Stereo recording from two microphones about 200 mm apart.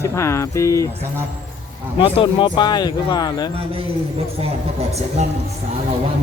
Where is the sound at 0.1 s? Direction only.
15° left (ahead or behind).